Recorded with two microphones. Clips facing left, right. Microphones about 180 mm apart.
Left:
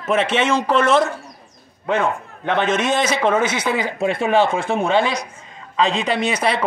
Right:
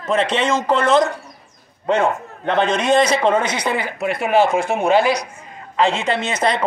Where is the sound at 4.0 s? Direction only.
25° left (ahead or behind).